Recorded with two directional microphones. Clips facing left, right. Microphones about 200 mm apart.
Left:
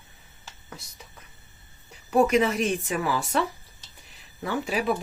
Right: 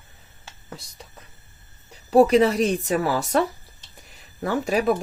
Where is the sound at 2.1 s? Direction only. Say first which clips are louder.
Right 5 dB; 35° right (ahead or behind).